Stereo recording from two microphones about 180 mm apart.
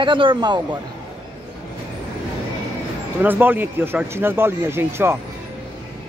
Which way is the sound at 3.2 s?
10° right (ahead or behind).